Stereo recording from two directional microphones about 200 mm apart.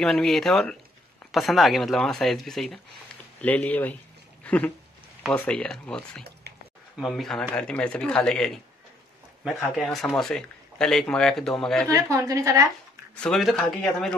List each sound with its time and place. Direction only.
0.0 s speech: centre (ahead or behind)
4.4 s a sound: 10° left (ahead or behind)
5.3 s speech: 5° left (ahead or behind)
11.9 s a woman's voice: 15° right (ahead or behind)
13.2 s speech: centre (ahead or behind)